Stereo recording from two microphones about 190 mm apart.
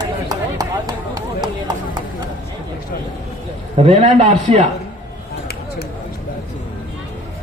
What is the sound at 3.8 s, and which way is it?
Speech, 30° right (ahead or behind).